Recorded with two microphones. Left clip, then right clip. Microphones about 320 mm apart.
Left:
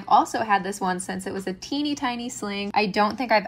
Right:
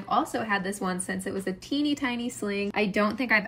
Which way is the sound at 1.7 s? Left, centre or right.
Centre.